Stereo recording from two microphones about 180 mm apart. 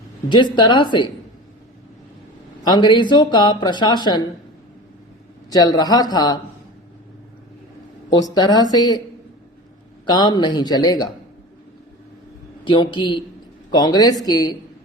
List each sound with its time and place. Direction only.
0.3 s speech: 25° left (ahead or behind)
2.6 s speech: 25° left (ahead or behind)
5.5 s speech: 20° left (ahead or behind)
8.1 s speech: 20° left (ahead or behind)
10.1 s speech: 25° left (ahead or behind)
12.6 s speech: 25° left (ahead or behind)